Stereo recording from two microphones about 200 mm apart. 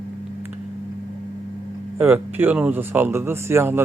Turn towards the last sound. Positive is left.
turn(degrees=-10)  # may be behind; listen again after turning